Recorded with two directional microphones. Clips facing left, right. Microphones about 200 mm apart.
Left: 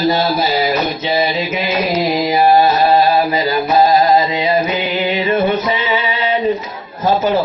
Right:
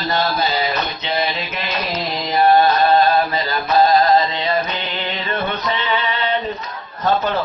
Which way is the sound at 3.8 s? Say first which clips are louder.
Left 2 dB; 15° left (ahead or behind).